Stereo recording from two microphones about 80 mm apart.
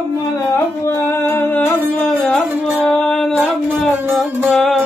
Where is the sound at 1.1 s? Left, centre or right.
Left.